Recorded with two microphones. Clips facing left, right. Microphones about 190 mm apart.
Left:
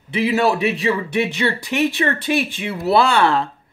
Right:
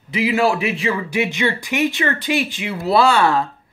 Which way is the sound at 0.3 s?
35° left (ahead or behind).